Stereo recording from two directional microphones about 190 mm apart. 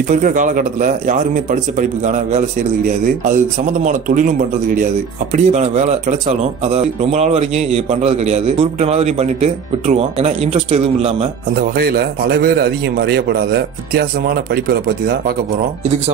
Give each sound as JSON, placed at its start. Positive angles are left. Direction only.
{"t": 0.1, "sound": "speech", "side_deg": -40}
{"t": 5.3, "sound": "speech", "side_deg": -35}
{"t": 11.7, "sound": "a man's voice", "side_deg": -55}